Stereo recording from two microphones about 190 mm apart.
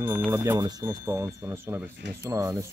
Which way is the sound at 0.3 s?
15° right (ahead or behind).